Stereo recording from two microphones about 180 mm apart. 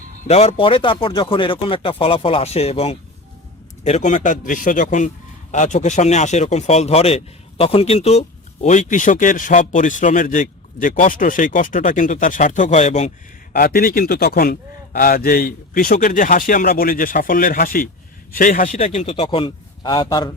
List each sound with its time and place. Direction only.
0.3 s a man's voice: 35° left (ahead or behind)
13.5 s a man's voice: 55° left (ahead or behind); by 20.3 s 20° left (ahead or behind)